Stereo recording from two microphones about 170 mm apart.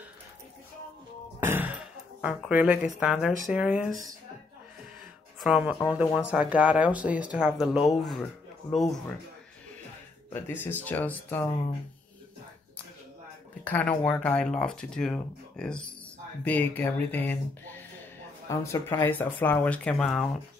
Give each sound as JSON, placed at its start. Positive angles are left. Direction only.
{"t": 1.4, "sound": "music", "side_deg": -10}
{"t": 2.2, "sound": "speech", "side_deg": -5}
{"t": 5.4, "sound": "speech", "side_deg": -5}
{"t": 10.3, "sound": "speech", "side_deg": 15}
{"t": 13.7, "sound": "speech", "side_deg": 10}